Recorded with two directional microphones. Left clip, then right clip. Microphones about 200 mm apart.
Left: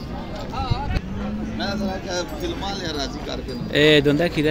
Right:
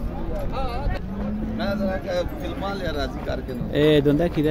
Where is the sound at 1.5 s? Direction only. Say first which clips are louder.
Right 1 dB; 45° right (ahead or behind).